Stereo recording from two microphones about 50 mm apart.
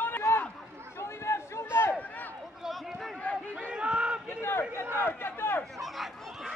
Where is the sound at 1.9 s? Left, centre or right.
Left.